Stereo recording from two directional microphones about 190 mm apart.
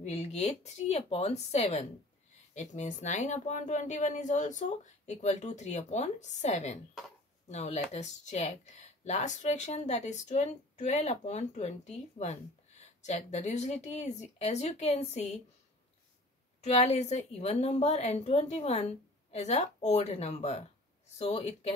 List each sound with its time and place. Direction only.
0.0 s speech: 35° left (ahead or behind)
16.6 s speech: 35° left (ahead or behind)